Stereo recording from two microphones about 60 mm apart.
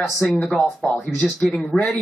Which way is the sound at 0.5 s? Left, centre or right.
Centre.